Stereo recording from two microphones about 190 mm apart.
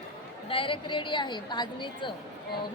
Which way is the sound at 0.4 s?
25° left (ahead or behind).